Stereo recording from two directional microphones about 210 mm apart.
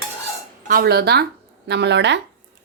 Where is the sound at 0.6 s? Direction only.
45° right (ahead or behind).